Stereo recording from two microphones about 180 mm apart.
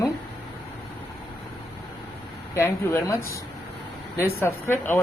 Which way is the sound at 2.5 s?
15° left (ahead or behind).